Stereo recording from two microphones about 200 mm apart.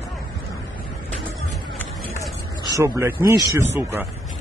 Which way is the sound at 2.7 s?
15° right (ahead or behind).